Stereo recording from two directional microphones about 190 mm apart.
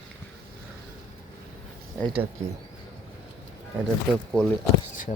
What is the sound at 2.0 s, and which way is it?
Speech, 30° right (ahead or behind).